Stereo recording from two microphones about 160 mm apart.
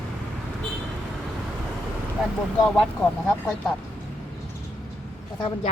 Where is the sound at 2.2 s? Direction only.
5° right (ahead or behind).